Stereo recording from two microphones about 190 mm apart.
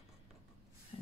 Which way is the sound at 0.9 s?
30° left (ahead or behind).